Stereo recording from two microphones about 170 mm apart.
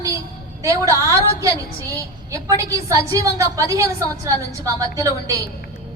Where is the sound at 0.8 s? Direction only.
20° left (ahead or behind).